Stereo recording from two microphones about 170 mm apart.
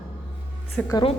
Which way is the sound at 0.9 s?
30° left (ahead or behind).